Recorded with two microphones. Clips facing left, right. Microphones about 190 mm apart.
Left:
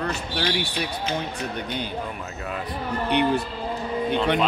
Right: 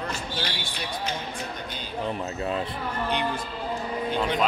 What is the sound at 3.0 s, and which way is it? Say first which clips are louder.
Speech: left 8 dB; 65° left (ahead or behind).